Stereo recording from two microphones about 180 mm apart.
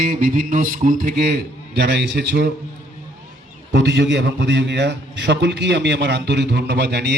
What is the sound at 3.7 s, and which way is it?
A man's voice, 75° right (ahead or behind).